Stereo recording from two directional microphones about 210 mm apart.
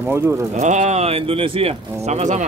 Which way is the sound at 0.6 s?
35° right (ahead or behind).